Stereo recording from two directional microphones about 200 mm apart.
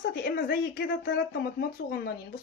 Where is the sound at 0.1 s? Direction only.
50° left (ahead or behind).